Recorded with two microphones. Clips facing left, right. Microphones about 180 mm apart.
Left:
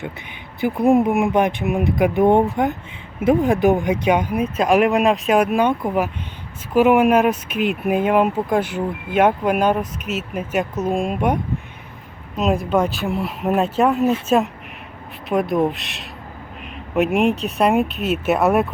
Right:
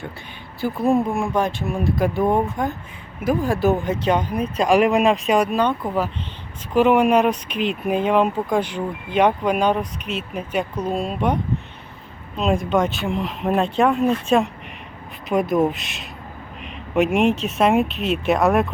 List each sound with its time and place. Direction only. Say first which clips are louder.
0.6 s speech: left 4 dB; 15° left (ahead or behind)
12.4 s speech: left 1 dB; 5° left (ahead or behind)